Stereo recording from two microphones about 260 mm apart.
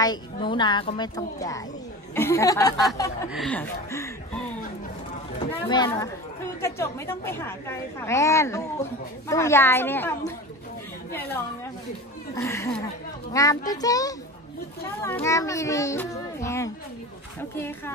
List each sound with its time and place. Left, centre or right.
0.0 s a woman's voice: centre
5.5 s a woman's voice: centre
12.4 s a woman's voice: centre